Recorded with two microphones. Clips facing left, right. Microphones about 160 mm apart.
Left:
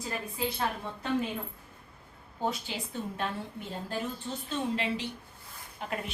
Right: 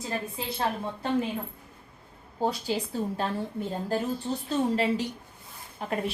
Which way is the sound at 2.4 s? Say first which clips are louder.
Right 5 dB; 35° right (ahead or behind).